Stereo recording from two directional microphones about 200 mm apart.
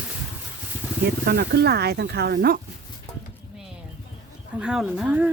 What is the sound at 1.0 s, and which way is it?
Speech, 55° right (ahead or behind).